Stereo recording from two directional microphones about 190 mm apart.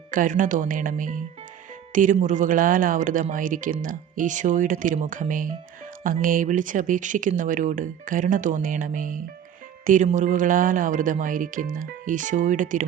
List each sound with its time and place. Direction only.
0.1 s speech: 45° right (ahead or behind)